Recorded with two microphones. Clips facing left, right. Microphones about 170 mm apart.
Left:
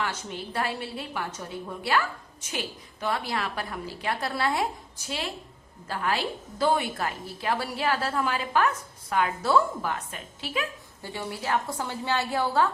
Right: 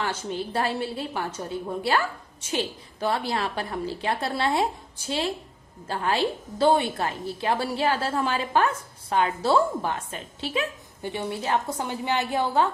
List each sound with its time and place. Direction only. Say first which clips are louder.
0.0 s a woman's voice: right 4 dB; 30° right (ahead or behind)